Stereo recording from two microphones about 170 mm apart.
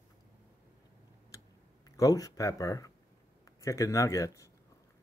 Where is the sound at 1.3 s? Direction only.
20° left (ahead or behind).